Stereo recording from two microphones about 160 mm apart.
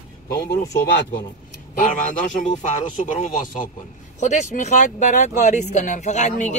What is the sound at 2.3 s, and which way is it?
Speech, 50° left (ahead or behind).